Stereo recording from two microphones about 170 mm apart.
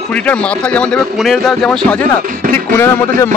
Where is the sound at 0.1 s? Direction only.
5° left (ahead or behind).